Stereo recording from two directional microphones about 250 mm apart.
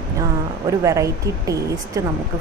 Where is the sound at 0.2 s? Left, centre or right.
Centre.